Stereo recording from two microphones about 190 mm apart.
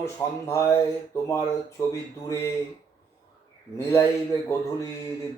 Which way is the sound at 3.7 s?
15° left (ahead or behind).